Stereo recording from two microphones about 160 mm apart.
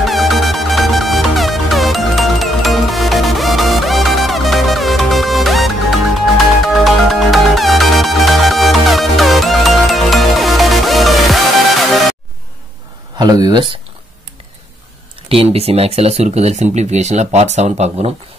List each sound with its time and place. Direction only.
0.0 s music: centre (ahead or behind)
13.2 s speech: 25° right (ahead or behind)
15.2 s speech: 35° right (ahead or behind)